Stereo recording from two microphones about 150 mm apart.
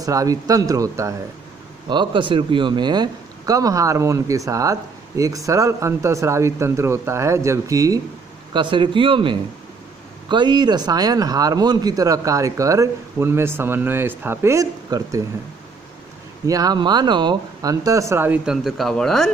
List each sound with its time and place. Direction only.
0.0 s speech: 25° right (ahead or behind)
1.9 s speech: 30° right (ahead or behind)
8.5 s speech: 30° right (ahead or behind)
16.4 s speech: 25° right (ahead or behind); by 19.2 s 5° left (ahead or behind)